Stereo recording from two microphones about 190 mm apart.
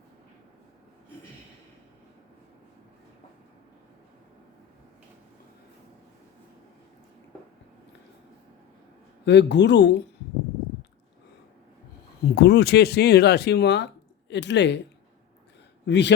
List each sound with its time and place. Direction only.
9.2 s speech: 65° left (ahead or behind)
12.4 s speech: 65° left (ahead or behind)
15.9 s speech: 65° left (ahead or behind)